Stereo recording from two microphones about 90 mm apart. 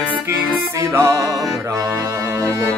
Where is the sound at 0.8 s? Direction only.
30° right (ahead or behind).